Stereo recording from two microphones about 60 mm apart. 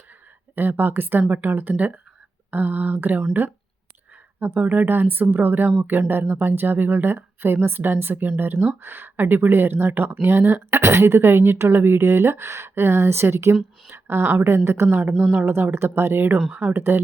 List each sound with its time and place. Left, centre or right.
0.5 s speech: right
4.4 s speech: right
14.8 s speech: right
15.7 s speech: right
16.5 s speech: right
16.7 s speech: right